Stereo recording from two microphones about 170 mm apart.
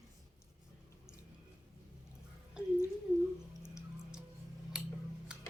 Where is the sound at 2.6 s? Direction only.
5° right (ahead or behind).